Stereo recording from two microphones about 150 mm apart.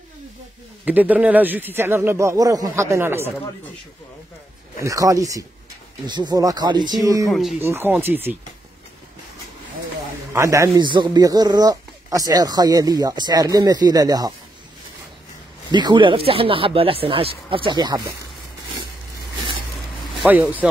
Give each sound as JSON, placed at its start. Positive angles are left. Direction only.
{"t": 0.8, "sound": "speech", "side_deg": -10}
{"t": 4.8, "sound": "speech", "side_deg": -20}
{"t": 7.2, "sound": "speech", "side_deg": 0}
{"t": 7.6, "sound": "speech", "side_deg": -15}
{"t": 10.3, "sound": "speech", "side_deg": -20}
{"t": 15.7, "sound": "speech", "side_deg": -30}
{"t": 20.2, "sound": "speech", "side_deg": -10}